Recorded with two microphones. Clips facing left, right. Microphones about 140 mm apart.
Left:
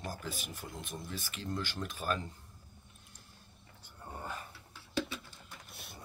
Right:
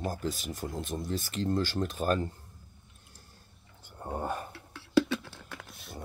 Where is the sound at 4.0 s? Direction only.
55° right (ahead or behind).